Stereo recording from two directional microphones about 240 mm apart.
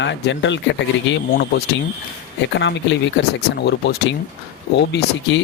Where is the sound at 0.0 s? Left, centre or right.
Left.